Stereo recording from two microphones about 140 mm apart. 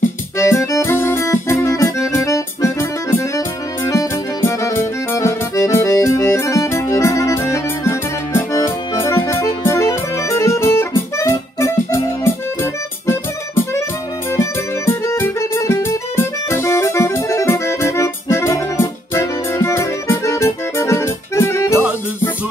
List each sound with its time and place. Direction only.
0.4 s accordion: 20° left (ahead or behind)
14.3 s music: 20° left (ahead or behind)